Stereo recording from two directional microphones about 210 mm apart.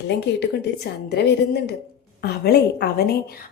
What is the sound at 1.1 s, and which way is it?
A woman's voice, 50° left (ahead or behind).